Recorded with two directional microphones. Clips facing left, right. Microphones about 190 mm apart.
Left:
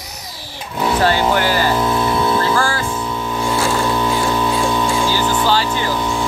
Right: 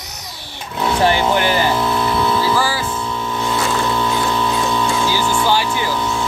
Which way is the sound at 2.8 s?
10° left (ahead or behind).